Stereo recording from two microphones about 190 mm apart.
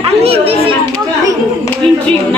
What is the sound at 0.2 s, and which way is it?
Chatter, 30° right (ahead or behind).